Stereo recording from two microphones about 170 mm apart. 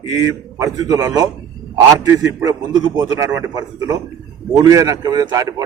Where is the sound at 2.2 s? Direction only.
15° right (ahead or behind).